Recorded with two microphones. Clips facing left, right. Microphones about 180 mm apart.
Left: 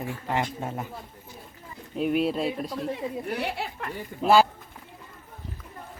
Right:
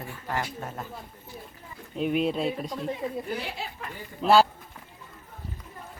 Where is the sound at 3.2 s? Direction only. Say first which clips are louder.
Left 3 dB; 65° left (ahead or behind).